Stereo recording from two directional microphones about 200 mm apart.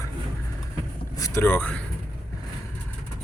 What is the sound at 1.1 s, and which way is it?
Speech, 15° left (ahead or behind).